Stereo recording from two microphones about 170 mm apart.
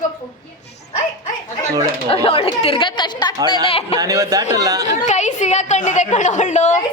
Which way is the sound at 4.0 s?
20° right (ahead or behind).